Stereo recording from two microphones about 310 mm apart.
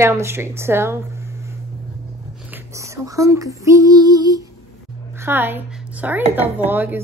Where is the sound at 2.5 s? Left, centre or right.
Centre.